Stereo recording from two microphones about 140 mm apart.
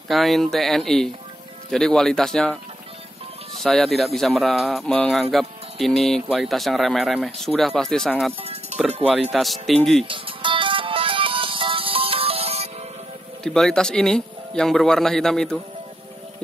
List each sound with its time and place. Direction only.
0.1 s speech: centre (ahead or behind)
3.6 s speech: centre (ahead or behind)
8.4 s music: 45° right (ahead or behind)
9.3 s speech: centre (ahead or behind)
10.0 s music: 40° right (ahead or behind)
13.4 s speech: 5° left (ahead or behind)